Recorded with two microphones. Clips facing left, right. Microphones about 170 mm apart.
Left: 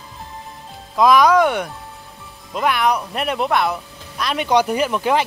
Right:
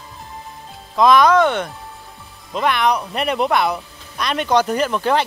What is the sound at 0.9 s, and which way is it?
Speech, 10° left (ahead or behind).